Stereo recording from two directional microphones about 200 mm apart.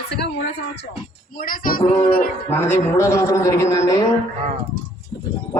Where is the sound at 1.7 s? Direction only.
45° left (ahead or behind).